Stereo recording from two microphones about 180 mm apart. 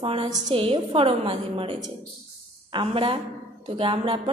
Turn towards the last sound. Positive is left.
turn(degrees=-30)  # may be behind; listen again after turning